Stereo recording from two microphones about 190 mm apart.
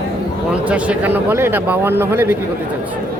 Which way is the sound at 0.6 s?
5° right (ahead or behind).